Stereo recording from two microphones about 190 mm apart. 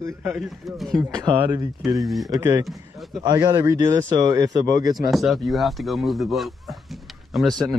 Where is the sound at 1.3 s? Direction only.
10° right (ahead or behind).